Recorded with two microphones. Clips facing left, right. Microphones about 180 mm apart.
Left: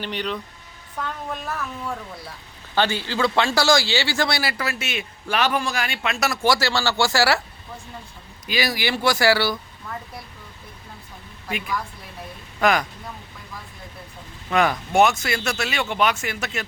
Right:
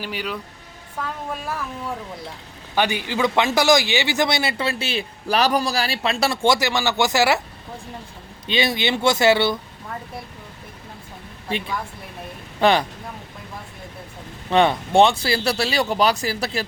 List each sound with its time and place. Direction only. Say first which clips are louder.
0.0 s a woman's voice: left 1 dB; 5° right (ahead or behind)
2.7 s a man's voice: right 1 dB; 15° right (ahead or behind)
8.4 s a man's voice: right 3 dB; 25° right (ahead or behind)
11.4 s a man's voice: right 1 dB; 30° right (ahead or behind)
14.5 s speech: right 3 dB; 30° right (ahead or behind)